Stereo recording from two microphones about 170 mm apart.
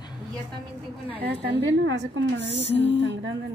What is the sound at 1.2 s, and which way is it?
A woman's voice, 80° right.